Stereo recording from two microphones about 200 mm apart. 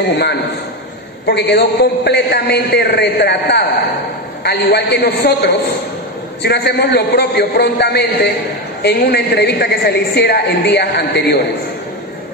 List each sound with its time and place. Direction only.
1.2 s a woman's voice: 55° left (ahead or behind)